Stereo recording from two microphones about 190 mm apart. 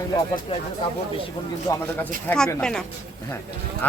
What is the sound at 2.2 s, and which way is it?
Speech, 5° left (ahead or behind).